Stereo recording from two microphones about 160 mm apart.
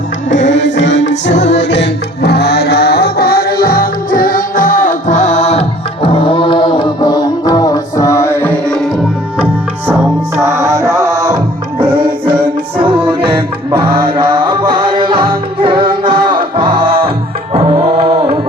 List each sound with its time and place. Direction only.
0.8 s music: 90° left; by 8.9 s 5° left (ahead or behind)
10.4 s music: 20° right (ahead or behind)
14.7 s music: 35° right (ahead or behind)